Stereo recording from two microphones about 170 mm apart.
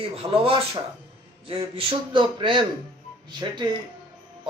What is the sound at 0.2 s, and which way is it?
A man's voice, 30° right (ahead or behind).